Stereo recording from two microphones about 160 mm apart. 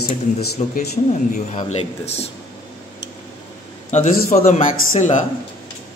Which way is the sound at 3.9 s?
45° left (ahead or behind).